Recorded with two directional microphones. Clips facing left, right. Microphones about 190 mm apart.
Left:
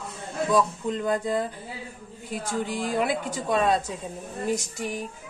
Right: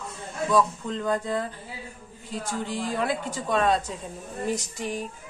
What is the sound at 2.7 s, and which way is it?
Speech, 10° left (ahead or behind).